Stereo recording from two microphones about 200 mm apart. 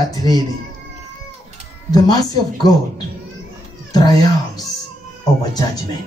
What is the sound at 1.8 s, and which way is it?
Speech, 20° left (ahead or behind).